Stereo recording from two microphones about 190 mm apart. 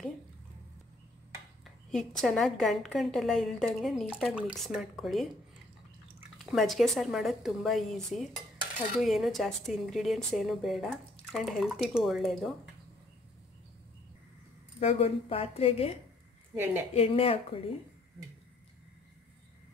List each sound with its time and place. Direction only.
1.9 s a woman's voice: centre (ahead or behind)
6.3 s a woman's voice: centre (ahead or behind)
14.8 s a woman's voice: 30° left (ahead or behind)
16.5 s a woman's voice: 10° right (ahead or behind)
16.9 s a woman's voice: 30° left (ahead or behind)